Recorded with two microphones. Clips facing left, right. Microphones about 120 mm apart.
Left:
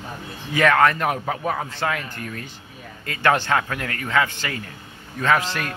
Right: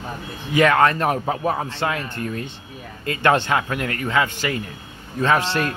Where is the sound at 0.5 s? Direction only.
20° right (ahead or behind).